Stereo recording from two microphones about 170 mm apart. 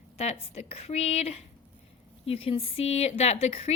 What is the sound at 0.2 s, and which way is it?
A woman's voice, 40° left (ahead or behind).